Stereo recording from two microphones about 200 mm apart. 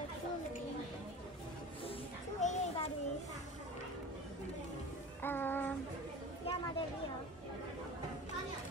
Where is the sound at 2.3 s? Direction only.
35° left (ahead or behind).